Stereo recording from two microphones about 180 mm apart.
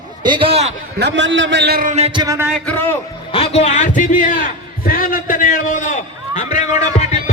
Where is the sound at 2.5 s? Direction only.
10° left (ahead or behind).